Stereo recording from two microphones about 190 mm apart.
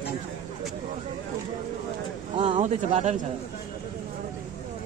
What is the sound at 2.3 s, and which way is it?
Speech, 25° right (ahead or behind).